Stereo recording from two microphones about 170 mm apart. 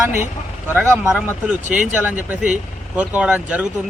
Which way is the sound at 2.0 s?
10° right (ahead or behind).